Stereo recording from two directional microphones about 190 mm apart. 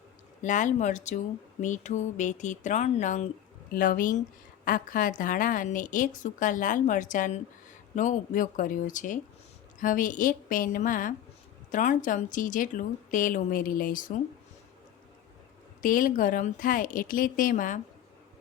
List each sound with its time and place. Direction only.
0.4 s a woman's voice: 40° left (ahead or behind)
15.8 s a woman's voice: 45° left (ahead or behind)